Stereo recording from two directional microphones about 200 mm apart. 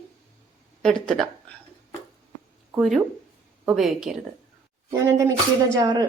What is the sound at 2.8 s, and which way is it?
A woman's voice, centre (ahead or behind).